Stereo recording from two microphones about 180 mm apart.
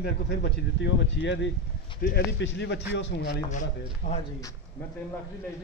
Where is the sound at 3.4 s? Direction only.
40° left (ahead or behind).